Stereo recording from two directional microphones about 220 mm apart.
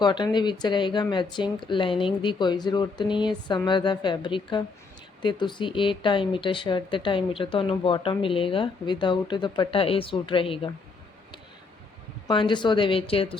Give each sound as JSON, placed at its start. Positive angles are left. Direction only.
{"t": 0.0, "sound": "speech", "side_deg": 20}
{"t": 12.3, "sound": "speech", "side_deg": 20}